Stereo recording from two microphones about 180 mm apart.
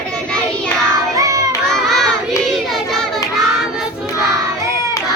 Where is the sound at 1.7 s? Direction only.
Centre (ahead or behind).